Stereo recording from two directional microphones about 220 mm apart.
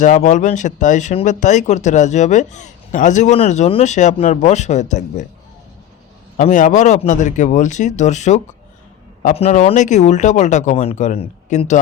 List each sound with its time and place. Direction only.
0.0 s speech: 35° left (ahead or behind)
6.3 s speech: 35° left (ahead or behind)